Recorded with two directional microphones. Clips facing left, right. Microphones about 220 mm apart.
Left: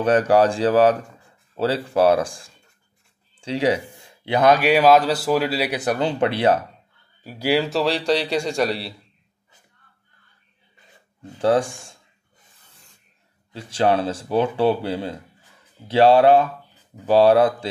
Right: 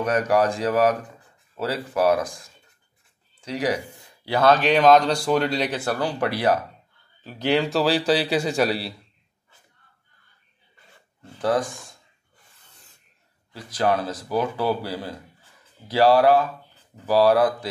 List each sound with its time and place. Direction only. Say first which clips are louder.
0.0 s a man's voice: left 4 dB; 30° left (ahead or behind); by 5.8 s 5° left (ahead or behind)
5.8 s speech: left 4 dB; 20° left (ahead or behind)
7.2 s a man's voice: left 1 dB; 10° left (ahead or behind)
11.2 s speech: left 4 dB; 30° left (ahead or behind)
13.5 s speech: left 3 dB; 25° left (ahead or behind)